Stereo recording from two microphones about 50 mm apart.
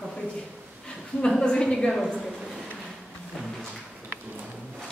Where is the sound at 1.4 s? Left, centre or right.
Centre.